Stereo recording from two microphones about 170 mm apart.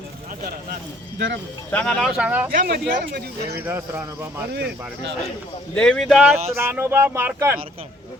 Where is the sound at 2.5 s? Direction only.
60° right (ahead or behind).